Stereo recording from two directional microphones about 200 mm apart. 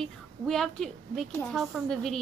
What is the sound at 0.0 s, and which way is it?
A woman's voice, 5° left (ahead or behind).